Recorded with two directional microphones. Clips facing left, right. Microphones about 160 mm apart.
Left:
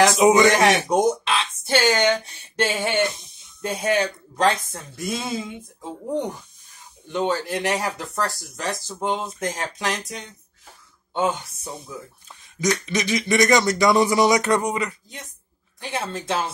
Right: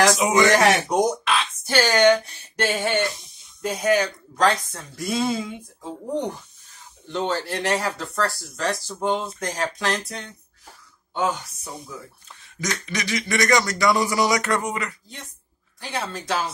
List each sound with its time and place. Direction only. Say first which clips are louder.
0.0 s speech: left 3 dB; 20° left (ahead or behind)
6.7 s speech: left 1 dB; 15° left (ahead or behind)